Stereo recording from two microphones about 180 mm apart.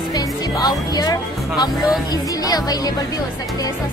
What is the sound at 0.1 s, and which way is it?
Music, 20° left (ahead or behind).